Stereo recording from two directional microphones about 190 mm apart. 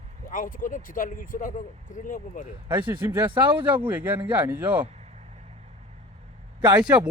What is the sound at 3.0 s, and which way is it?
Speech, 10° right (ahead or behind).